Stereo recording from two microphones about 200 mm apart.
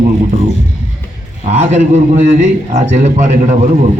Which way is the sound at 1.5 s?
35° right (ahead or behind).